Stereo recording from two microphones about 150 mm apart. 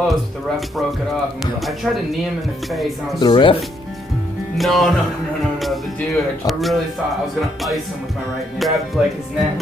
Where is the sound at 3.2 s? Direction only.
35° left (ahead or behind).